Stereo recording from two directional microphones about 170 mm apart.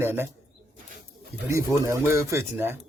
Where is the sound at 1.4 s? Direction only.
15° right (ahead or behind).